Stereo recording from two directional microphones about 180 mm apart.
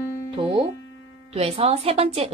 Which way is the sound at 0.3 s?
35° right (ahead or behind).